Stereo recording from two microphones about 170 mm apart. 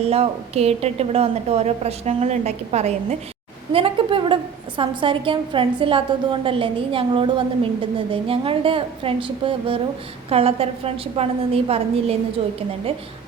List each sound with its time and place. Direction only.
0.0 s a woman's voice: 35° right (ahead or behind)